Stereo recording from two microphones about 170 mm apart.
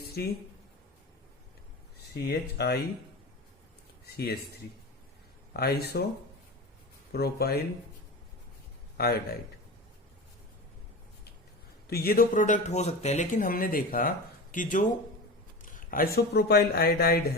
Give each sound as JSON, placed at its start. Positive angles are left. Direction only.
{"t": 0.2, "sound": "speech", "side_deg": 70}
{"t": 2.2, "sound": "speech", "side_deg": 70}
{"t": 4.0, "sound": "speech", "side_deg": 70}
{"t": 5.5, "sound": "speech", "side_deg": 65}
{"t": 7.1, "sound": "speech", "side_deg": 65}
{"t": 9.0, "sound": "speech", "side_deg": 65}
{"t": 11.9, "sound": "speech", "side_deg": 65}